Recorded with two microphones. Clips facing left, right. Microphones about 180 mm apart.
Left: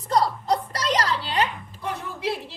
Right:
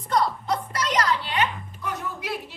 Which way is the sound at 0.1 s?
35° left (ahead or behind).